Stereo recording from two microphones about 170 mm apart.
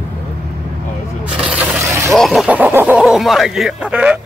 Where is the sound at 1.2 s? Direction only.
5° right (ahead or behind).